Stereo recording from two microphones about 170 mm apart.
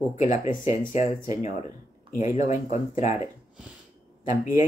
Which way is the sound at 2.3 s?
45° left (ahead or behind).